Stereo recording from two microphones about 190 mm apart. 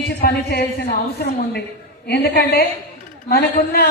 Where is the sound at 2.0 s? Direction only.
60° left (ahead or behind).